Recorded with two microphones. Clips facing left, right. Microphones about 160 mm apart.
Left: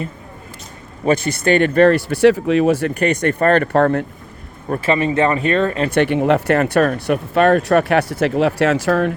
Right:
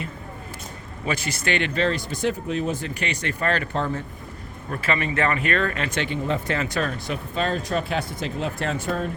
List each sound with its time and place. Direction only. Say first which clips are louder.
1.0 s speech: left 11 dB; 45° left (ahead or behind); by 4.0 s 65° left (ahead or behind)
4.7 s speech: left 8 dB; 35° left (ahead or behind)
5.9 s speech: left 11 dB; 65° left (ahead or behind)